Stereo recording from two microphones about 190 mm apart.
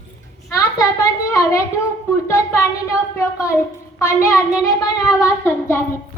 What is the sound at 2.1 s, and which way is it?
A woman's voice, 15° left (ahead or behind).